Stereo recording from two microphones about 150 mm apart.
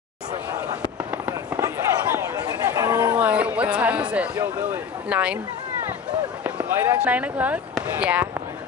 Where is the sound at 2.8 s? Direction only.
25° right (ahead or behind).